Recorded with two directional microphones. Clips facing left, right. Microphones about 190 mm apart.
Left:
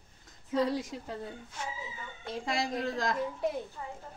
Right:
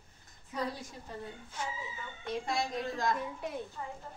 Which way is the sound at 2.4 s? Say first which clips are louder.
Left 4 dB; 90° left.